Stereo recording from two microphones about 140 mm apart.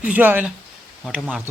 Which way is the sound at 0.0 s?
10° right (ahead or behind).